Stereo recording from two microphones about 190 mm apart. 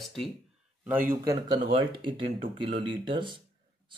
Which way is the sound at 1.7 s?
25° right (ahead or behind).